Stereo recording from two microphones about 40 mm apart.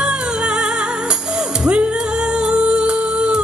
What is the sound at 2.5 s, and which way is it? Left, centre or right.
Music, right.